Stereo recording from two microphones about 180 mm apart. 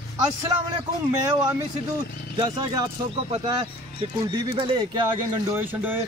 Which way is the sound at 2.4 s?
20° right (ahead or behind).